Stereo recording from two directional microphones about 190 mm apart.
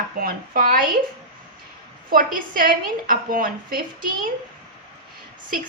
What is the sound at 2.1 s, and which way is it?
A woman's voice, 45° right (ahead or behind).